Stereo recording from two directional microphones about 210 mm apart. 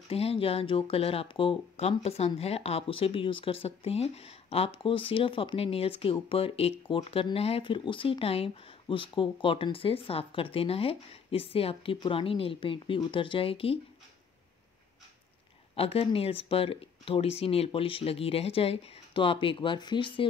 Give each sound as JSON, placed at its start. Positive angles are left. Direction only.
{"t": 0.1, "sound": "speech", "side_deg": 30}
{"t": 15.7, "sound": "speech", "side_deg": 25}